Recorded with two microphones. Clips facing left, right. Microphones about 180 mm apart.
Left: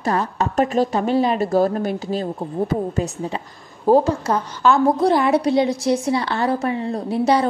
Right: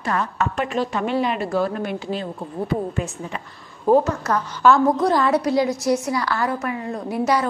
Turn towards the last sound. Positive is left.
turn(degrees=30)  # may be behind; listen again after turning